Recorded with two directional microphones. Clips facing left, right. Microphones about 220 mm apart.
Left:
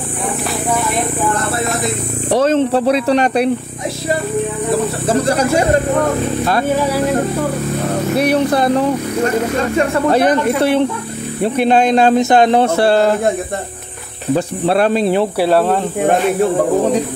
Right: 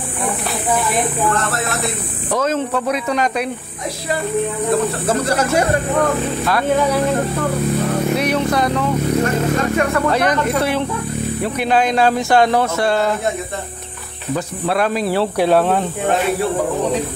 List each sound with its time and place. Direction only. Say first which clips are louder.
2.3 s speech: left 6 dB; 30° left (ahead or behind)
8.3 s speech: left 4 dB; 35° left (ahead or behind)
14.3 s speech: left 5 dB; 30° left (ahead or behind)
15.3 s speech: left 1 dB; 5° left (ahead or behind)